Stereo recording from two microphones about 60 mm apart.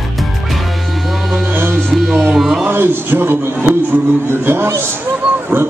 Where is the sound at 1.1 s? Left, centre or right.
Centre.